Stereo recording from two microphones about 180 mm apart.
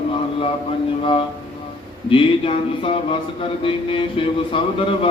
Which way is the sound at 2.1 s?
30° left (ahead or behind).